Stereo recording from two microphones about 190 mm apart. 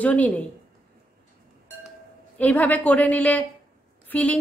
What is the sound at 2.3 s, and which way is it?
A woman's voice, 10° left (ahead or behind).